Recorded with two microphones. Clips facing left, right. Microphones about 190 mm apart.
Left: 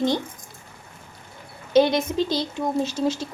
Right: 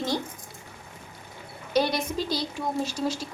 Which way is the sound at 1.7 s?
25° left (ahead or behind).